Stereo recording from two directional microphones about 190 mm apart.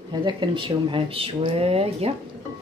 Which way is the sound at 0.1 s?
25° right (ahead or behind).